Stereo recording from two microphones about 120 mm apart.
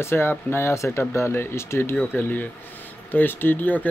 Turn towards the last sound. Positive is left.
turn(degrees=15)  # may be behind; listen again after turning